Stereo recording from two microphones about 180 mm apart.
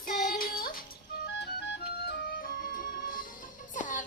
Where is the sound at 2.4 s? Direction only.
50° left (ahead or behind).